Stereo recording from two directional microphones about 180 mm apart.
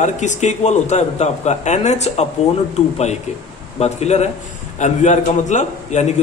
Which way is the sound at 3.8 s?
35° left (ahead or behind).